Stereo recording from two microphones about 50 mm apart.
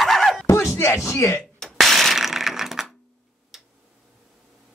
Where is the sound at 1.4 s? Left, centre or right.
Centre.